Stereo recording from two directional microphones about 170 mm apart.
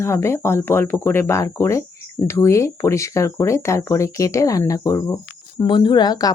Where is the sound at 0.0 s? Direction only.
15° left (ahead or behind).